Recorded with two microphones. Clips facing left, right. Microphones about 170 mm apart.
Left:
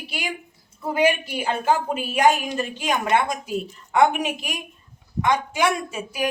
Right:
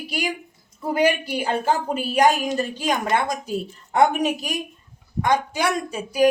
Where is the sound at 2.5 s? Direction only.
35° right (ahead or behind).